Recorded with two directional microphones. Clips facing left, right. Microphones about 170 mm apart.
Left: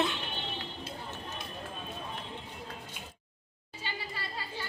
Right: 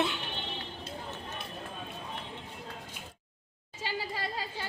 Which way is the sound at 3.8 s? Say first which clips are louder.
Right 5 dB; 90° right.